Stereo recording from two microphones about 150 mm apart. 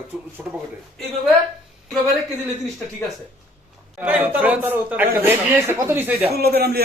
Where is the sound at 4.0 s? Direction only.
10° right (ahead or behind).